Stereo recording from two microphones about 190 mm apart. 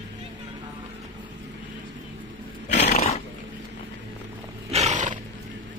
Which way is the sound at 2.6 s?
35° left (ahead or behind).